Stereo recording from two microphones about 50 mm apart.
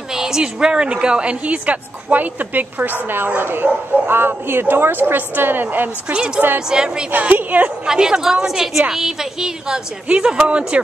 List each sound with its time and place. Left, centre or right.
0.1 s a woman's voice: centre; by 5.9 s right
6.0 s a woman's voice: right
7.1 s a woman's voice: right
7.8 s a woman's voice: centre
10.0 s a woman's voice: right